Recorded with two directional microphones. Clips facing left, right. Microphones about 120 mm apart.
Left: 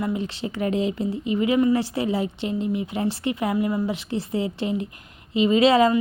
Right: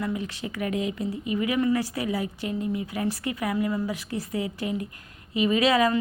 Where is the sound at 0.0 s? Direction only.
25° left (ahead or behind).